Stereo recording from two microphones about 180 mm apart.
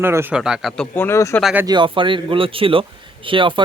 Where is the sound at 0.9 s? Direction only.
15° left (ahead or behind).